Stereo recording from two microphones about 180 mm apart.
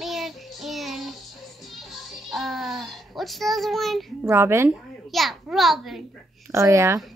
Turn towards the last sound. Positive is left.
turn(degrees=-15)  # may be behind; listen again after turning